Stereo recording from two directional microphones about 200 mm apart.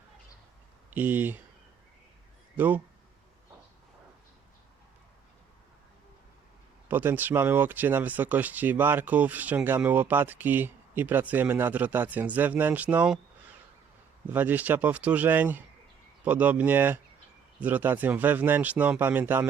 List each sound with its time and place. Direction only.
0.9 s speech: 10° right (ahead or behind)
2.6 s speech: 10° right (ahead or behind)
6.8 s speech: 10° right (ahead or behind)
14.3 s speech: 10° right (ahead or behind)